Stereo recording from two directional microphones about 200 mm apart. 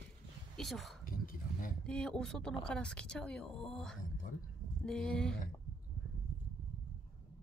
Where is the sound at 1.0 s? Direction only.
45° left (ahead or behind).